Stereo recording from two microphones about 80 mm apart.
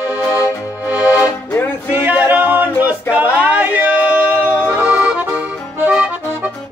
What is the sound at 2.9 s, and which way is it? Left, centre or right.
Male singing, centre.